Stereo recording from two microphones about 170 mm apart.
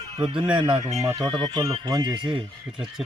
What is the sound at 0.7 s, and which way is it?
Speech, 40° right (ahead or behind).